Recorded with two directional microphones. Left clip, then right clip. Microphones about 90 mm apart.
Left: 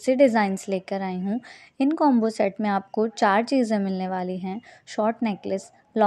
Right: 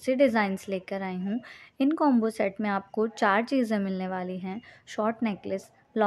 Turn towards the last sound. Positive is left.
turn(degrees=35)  # may be behind; listen again after turning